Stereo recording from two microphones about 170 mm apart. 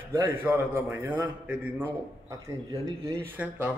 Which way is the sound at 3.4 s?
10° right (ahead or behind).